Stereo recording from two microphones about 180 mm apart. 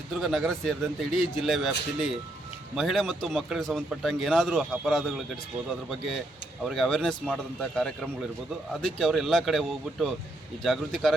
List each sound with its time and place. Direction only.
0.2 s a man's voice: centre (ahead or behind)
6.7 s a man's voice: centre (ahead or behind)